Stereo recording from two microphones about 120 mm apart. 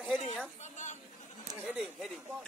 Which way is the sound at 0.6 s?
90° left.